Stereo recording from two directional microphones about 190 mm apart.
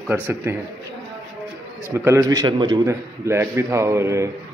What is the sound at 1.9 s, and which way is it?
A man's voice, 15° right (ahead or behind).